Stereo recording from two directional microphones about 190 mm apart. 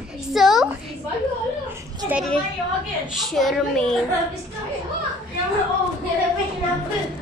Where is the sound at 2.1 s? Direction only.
Centre (ahead or behind).